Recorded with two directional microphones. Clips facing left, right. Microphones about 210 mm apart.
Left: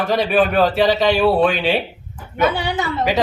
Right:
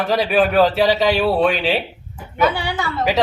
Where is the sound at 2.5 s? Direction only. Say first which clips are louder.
Left 2 dB; 20° left (ahead or behind).